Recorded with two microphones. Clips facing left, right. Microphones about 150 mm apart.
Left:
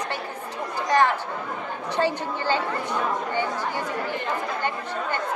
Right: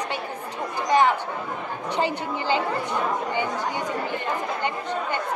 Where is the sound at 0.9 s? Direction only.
15° right (ahead or behind).